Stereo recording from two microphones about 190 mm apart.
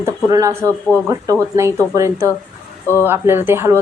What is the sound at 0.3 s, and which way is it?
Speech, 20° right (ahead or behind).